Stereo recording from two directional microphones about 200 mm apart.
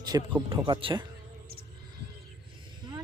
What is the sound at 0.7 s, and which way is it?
Speech, 25° right (ahead or behind).